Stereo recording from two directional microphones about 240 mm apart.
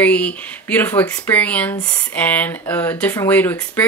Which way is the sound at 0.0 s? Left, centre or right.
Centre.